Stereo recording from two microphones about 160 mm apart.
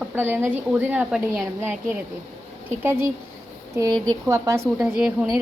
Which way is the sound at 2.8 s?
15° right (ahead or behind).